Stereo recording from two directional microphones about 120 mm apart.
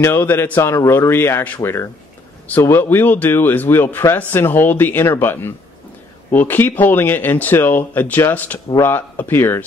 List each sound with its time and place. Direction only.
0.0 s a man's voice: 20° left (ahead or behind)